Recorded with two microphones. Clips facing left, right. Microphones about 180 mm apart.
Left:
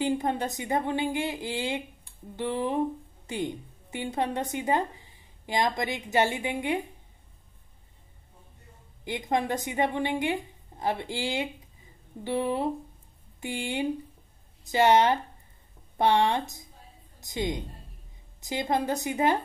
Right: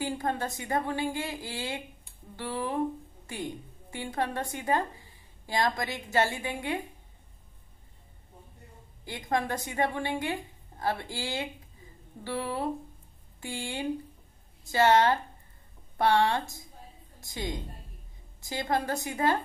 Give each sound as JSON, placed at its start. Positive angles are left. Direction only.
{"t": 0.0, "sound": "a woman's voice", "side_deg": 20}
{"t": 9.0, "sound": "a woman's voice", "side_deg": 20}